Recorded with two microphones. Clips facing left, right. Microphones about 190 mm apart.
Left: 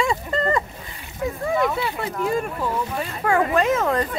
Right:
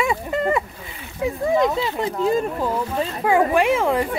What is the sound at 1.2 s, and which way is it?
Speech, 20° right (ahead or behind).